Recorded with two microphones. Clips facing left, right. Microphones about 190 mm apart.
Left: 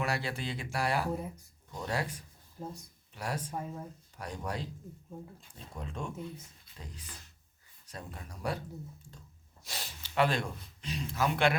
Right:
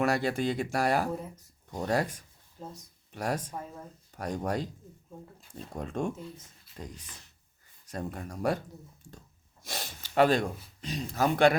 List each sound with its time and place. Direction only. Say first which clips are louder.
0.0 s speech: right 7 dB; 45° right (ahead or behind)
5.7 s speech: right 8 dB; 45° right (ahead or behind)
7.9 s speech: right 9 dB; 50° right (ahead or behind)
9.6 s speech: right 5 dB; 45° right (ahead or behind)